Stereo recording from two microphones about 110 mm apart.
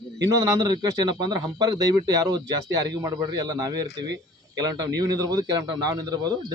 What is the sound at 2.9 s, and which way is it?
Speech, 40° right (ahead or behind).